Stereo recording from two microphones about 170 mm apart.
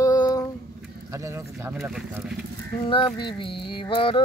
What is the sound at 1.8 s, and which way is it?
Speech, 10° right (ahead or behind).